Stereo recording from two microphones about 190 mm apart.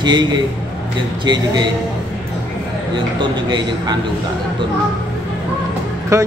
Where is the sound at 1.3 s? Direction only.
25° right (ahead or behind).